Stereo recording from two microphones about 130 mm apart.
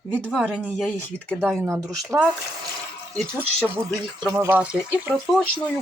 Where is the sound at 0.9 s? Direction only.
5° left (ahead or behind).